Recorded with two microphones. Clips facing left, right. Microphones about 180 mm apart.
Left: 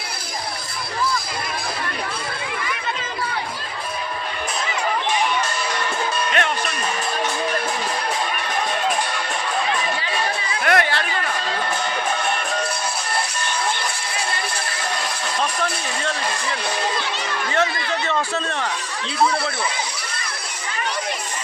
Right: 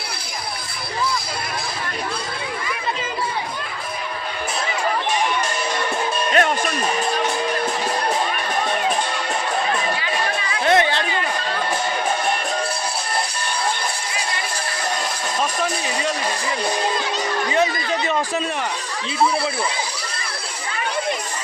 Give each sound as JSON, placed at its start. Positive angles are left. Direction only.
{"t": 6.3, "sound": "music", "side_deg": -40}
{"t": 10.6, "sound": "chatter", "side_deg": -25}
{"t": 15.6, "sound": "a sound", "side_deg": -15}
{"t": 17.5, "sound": "a man's voice", "side_deg": -15}